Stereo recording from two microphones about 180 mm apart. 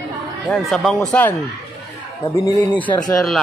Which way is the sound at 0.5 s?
5° left (ahead or behind).